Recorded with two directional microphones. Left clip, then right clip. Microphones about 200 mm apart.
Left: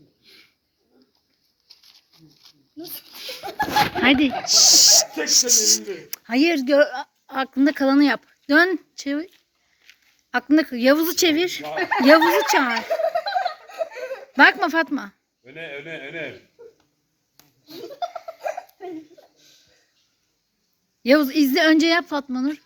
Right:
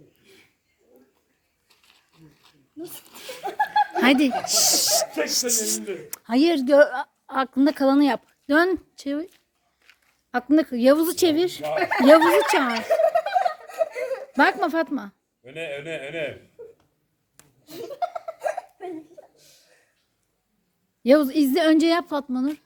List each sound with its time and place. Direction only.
1.6 s a sound: centre (ahead or behind)
3.9 s speech: 10° right (ahead or behind)
11.6 s speech: 35° right (ahead or behind)
12.2 s speech: 25° right (ahead or behind)
12.8 s giggle: 20° right (ahead or behind)
14.3 s speech: centre (ahead or behind)
15.4 s speech: 35° right (ahead or behind)
16.6 s a sound: 15° right (ahead or behind)
17.7 s laughter: 15° right (ahead or behind)
21.0 s speech: centre (ahead or behind)